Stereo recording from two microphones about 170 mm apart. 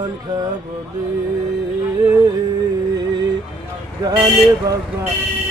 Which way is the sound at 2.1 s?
20° right (ahead or behind).